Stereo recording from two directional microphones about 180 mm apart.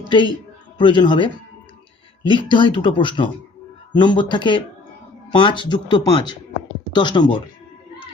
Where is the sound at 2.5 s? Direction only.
25° left (ahead or behind).